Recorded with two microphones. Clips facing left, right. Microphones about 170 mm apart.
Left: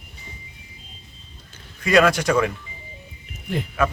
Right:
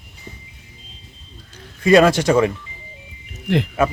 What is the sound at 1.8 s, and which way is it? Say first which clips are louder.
Speech: right 5 dB; 30° right (ahead or behind).